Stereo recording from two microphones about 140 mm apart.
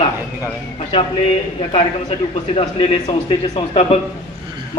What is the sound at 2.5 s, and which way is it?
Speech, 40° left (ahead or behind).